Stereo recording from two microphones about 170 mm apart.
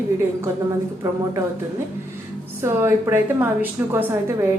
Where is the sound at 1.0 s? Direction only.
15° right (ahead or behind).